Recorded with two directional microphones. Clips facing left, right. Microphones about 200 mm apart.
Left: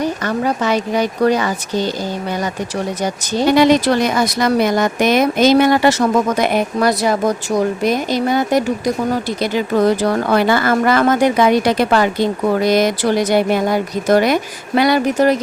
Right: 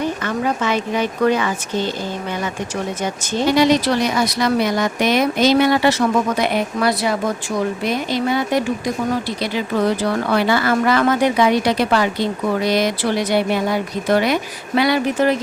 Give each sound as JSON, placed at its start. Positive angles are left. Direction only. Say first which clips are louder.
{"t": 0.0, "sound": "speech", "louder": "left 2 dB", "side_deg": 40}
{"t": 3.5, "sound": "speech", "louder": "left 3 dB", "side_deg": 50}